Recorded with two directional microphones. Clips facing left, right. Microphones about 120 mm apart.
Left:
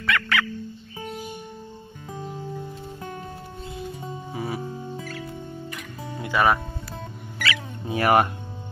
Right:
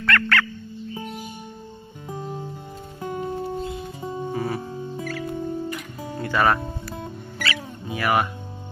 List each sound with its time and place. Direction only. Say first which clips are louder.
0.0 s music: right 2 dB; 10° left (ahead or behind)
4.3 s music: right 3 dB; 10° left (ahead or behind)
6.1 s music: even; 15° left (ahead or behind)
7.3 s music: left 1 dB; 35° right (ahead or behind)
7.9 s speech: left 3 dB; 45° left (ahead or behind)